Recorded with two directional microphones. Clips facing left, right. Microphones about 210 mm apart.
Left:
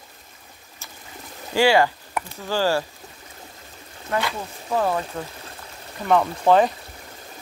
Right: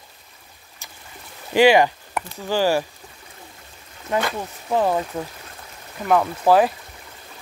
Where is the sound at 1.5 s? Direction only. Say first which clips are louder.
Right 3 dB; 15° right (ahead or behind).